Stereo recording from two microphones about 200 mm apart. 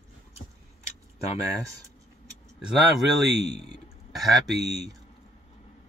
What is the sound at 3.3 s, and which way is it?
Speech, 60° right (ahead or behind).